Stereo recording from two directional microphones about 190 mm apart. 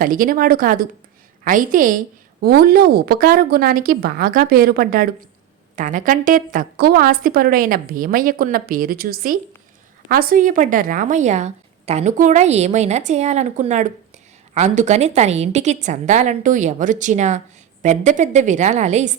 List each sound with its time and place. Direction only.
0.0 s a woman's voice: 50° right (ahead or behind)